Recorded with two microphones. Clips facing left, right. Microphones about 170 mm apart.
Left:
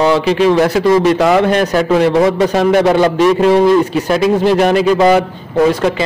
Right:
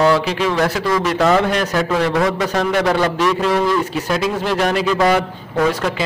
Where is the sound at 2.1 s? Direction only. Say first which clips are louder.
Left 6 dB; 25° left (ahead or behind).